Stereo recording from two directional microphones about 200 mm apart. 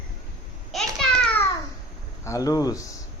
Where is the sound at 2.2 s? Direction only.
15° left (ahead or behind).